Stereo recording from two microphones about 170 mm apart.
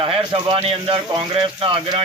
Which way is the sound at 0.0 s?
30° right (ahead or behind).